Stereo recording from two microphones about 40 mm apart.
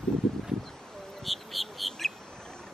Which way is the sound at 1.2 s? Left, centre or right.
Centre.